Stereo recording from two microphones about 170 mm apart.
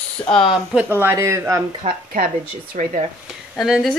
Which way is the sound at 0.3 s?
Centre (ahead or behind).